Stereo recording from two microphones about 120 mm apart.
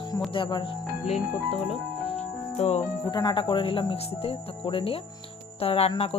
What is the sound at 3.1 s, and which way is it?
Speech, 35° left (ahead or behind).